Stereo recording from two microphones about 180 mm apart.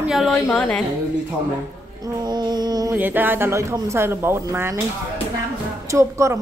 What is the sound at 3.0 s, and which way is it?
Speech, 10° right (ahead or behind).